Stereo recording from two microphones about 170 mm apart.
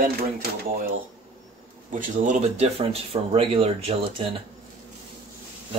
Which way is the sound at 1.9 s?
45° right (ahead or behind).